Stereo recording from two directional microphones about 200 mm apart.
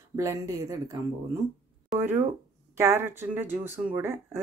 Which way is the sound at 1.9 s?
10° right (ahead or behind).